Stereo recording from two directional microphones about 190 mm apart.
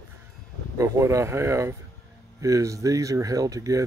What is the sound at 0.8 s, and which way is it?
Speech, 15° right (ahead or behind).